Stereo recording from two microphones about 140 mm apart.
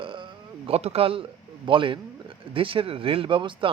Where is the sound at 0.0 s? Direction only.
40° right (ahead or behind).